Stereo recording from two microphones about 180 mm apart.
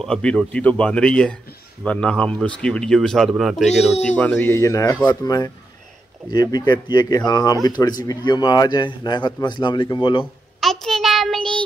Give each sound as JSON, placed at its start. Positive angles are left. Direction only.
{"t": 0.0, "sound": "speech", "side_deg": 5}
{"t": 3.6, "sound": "speech", "side_deg": 35}
{"t": 4.2, "sound": "a man's voice", "side_deg": 10}
{"t": 10.6, "sound": "child singing", "side_deg": 0}